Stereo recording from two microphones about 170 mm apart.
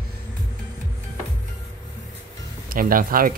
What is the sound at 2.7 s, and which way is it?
Speech, 55° right (ahead or behind).